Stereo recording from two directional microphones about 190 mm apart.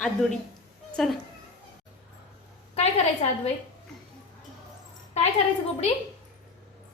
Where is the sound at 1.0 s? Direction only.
Centre (ahead or behind).